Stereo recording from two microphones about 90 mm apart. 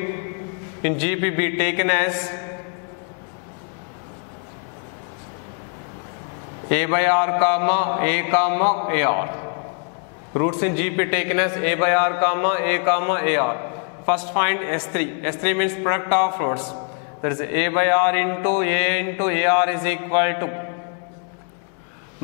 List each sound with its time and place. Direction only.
0.8 s a man's voice: 10° left (ahead or behind)
6.7 s a man's voice: 10° left (ahead or behind)